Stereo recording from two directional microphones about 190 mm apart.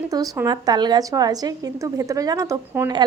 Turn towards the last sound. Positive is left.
turn(degrees=-20)  # may be behind; listen again after turning